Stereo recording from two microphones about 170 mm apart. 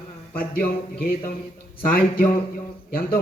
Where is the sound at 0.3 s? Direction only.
60° left (ahead or behind).